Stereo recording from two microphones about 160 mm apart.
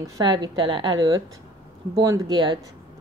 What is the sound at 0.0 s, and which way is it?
Speech, 25° right (ahead or behind).